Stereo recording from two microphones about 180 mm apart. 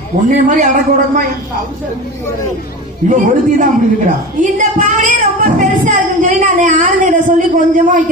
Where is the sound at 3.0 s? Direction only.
45° right (ahead or behind).